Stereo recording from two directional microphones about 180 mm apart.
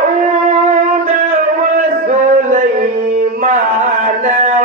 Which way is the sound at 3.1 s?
45° right (ahead or behind).